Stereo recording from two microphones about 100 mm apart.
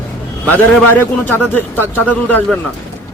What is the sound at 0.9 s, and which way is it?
A man's voice, 20° left (ahead or behind).